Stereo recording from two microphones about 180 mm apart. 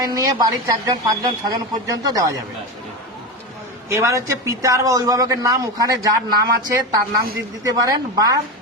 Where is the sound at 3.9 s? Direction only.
15° right (ahead or behind).